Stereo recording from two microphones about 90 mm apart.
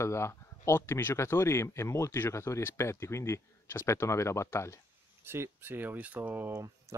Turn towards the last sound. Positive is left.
turn(degrees=-30)  # may be behind; listen again after turning